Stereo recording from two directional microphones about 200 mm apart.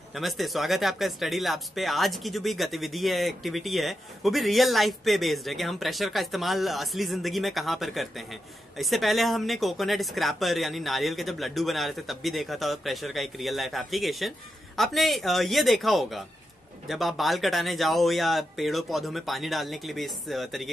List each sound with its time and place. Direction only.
0.1 s speech: centre (ahead or behind)